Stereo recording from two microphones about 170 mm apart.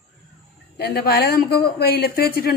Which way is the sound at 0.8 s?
60° left (ahead or behind).